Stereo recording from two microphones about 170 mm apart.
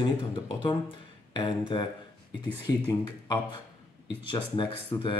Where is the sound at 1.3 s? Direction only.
30° left (ahead or behind).